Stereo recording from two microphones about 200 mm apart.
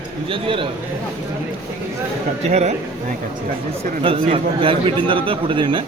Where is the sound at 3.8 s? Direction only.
30° right (ahead or behind).